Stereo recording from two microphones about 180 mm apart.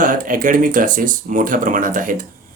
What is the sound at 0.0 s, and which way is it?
Speech, 50° right (ahead or behind).